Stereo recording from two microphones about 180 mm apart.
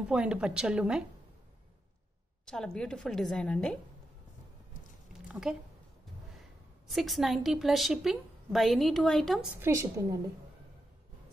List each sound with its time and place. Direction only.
0.1 s a woman's voice: 5° right (ahead or behind)
2.4 s a woman's voice: 5° left (ahead or behind)
5.3 s speech: 5° right (ahead or behind)
6.9 s a woman's voice: centre (ahead or behind)
9.6 s a woman's voice: 15° right (ahead or behind)